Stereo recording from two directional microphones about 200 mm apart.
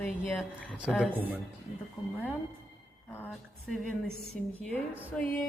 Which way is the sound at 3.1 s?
5° left (ahead or behind).